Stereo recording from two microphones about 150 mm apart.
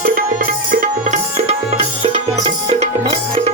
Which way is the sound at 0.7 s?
65° right (ahead or behind).